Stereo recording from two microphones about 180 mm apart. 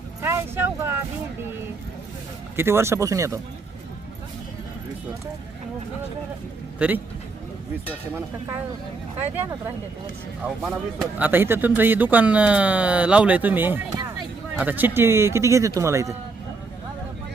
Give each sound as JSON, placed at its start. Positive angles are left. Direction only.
{"t": 0.2, "sound": "a sound", "side_deg": -15}
{"t": 2.6, "sound": "speech", "side_deg": -15}
{"t": 6.7, "sound": "a man's voice", "side_deg": -10}
{"t": 9.3, "sound": "speech", "side_deg": -10}
{"t": 10.4, "sound": "speech", "side_deg": 0}
{"t": 11.2, "sound": "speech", "side_deg": -10}